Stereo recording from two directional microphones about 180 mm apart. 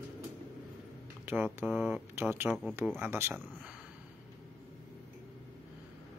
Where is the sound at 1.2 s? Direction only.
10° right (ahead or behind).